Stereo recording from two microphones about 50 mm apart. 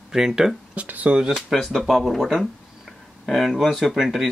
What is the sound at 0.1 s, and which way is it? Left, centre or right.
Speech, centre.